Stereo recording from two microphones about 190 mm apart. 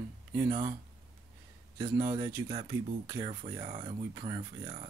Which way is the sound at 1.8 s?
20° right (ahead or behind).